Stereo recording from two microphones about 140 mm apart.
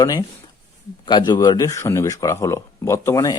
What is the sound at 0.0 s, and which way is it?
Speech, 25° left (ahead or behind).